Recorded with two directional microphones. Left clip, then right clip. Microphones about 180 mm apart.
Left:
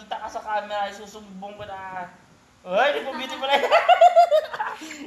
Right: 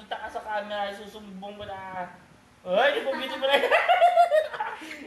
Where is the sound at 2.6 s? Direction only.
30° left (ahead or behind).